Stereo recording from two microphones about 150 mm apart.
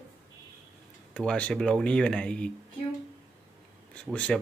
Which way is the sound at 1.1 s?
5° left (ahead or behind).